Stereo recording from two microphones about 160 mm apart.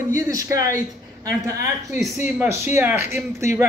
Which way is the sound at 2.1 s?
15° right (ahead or behind).